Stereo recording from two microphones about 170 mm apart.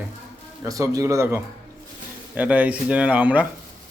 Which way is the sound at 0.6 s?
20° right (ahead or behind).